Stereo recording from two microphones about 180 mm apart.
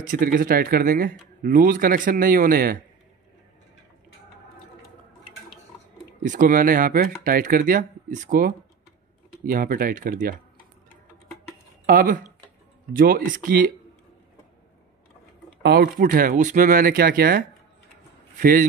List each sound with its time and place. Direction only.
0.0 s speech: 50° right (ahead or behind)
6.2 s speech: 45° right (ahead or behind)
11.8 s speech: 50° right (ahead or behind)
15.6 s speech: 60° right (ahead or behind)